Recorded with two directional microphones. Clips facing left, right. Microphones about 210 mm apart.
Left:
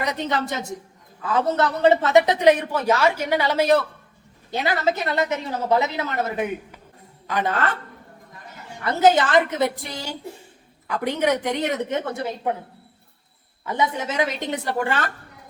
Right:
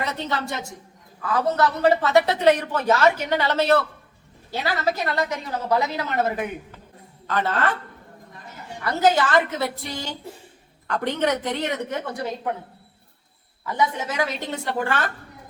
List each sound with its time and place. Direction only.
0.0 s a woman's voice: 15° left (ahead or behind)
8.8 s a woman's voice: 20° left (ahead or behind)
13.7 s a woman's voice: 20° left (ahead or behind)